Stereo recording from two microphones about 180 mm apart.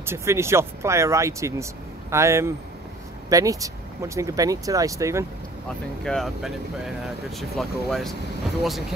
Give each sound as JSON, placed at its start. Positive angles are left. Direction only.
{"t": 0.0, "sound": "speech", "side_deg": -15}
{"t": 6.0, "sound": "speech", "side_deg": 0}